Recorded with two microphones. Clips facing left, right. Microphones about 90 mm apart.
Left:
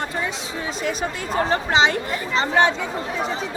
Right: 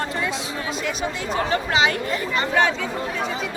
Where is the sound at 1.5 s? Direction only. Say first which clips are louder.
Left 2 dB; 30° left (ahead or behind).